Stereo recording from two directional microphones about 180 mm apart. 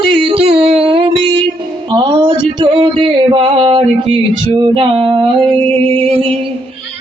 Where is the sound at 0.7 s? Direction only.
30° right (ahead or behind).